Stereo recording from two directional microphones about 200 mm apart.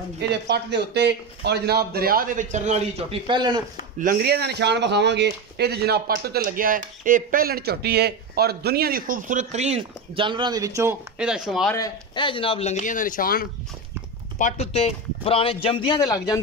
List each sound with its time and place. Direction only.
0.3 s a man's voice: 55° right (ahead or behind); by 3.2 s 35° right (ahead or behind)
3.3 s speech: 20° right (ahead or behind)
4.0 s speech: 50° right (ahead or behind); by 11.7 s centre (ahead or behind)
11.7 s speech: 20° left (ahead or behind); by 13.5 s 45° left (ahead or behind)
14.4 s a man's voice: 30° left (ahead or behind)